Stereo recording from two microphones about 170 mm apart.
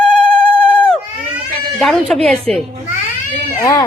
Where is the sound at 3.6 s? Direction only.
20° left (ahead or behind).